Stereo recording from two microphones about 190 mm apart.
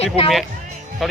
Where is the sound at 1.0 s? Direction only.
Centre (ahead or behind).